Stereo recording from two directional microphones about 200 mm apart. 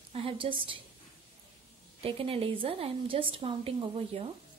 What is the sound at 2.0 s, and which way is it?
A woman's voice, 30° right (ahead or behind).